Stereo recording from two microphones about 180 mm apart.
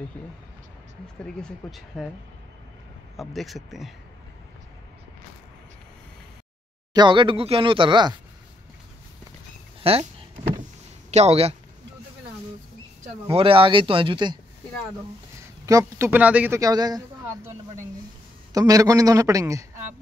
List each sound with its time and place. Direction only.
1.2 s speech: centre (ahead or behind)
3.2 s speech: centre (ahead or behind)
6.9 s speech: 25° right (ahead or behind)
9.8 s a sound: 35° right (ahead or behind)
11.1 s speech: 35° right (ahead or behind)
13.3 s speech: 30° right (ahead or behind)
15.6 s speech: 15° right (ahead or behind)
18.5 s speech: 20° right (ahead or behind)